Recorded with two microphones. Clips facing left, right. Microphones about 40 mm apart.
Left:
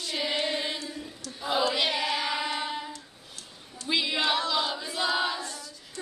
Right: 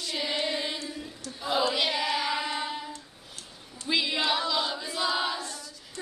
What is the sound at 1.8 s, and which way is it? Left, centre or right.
Music, centre.